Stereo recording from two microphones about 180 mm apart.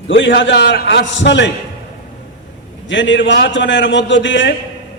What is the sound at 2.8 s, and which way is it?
A man's voice, 90° left.